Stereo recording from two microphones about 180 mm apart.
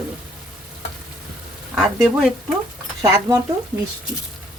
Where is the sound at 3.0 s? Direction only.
15° right (ahead or behind).